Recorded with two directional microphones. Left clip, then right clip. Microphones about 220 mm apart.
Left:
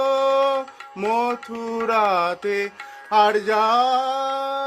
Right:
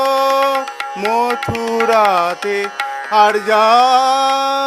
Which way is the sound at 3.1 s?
15° right (ahead or behind).